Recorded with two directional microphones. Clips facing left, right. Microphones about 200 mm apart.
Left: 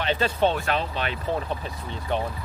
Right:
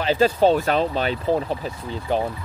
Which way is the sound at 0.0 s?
35° right (ahead or behind).